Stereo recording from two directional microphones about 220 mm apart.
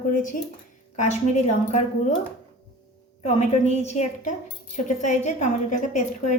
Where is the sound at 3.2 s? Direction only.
30° left (ahead or behind).